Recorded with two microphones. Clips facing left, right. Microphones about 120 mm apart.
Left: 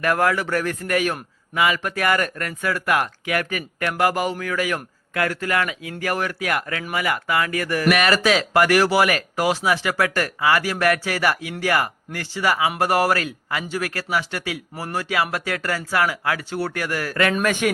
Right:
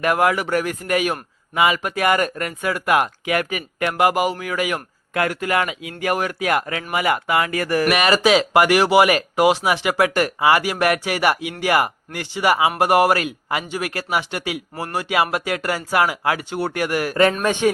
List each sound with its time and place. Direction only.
0.0 s a man's voice: 15° right (ahead or behind)